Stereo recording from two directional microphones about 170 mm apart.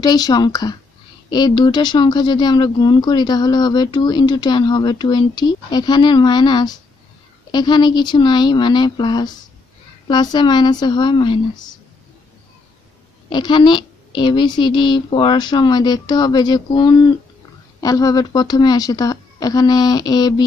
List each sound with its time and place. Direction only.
0.0 s speech: 25° left (ahead or behind)
13.3 s speech: 25° left (ahead or behind)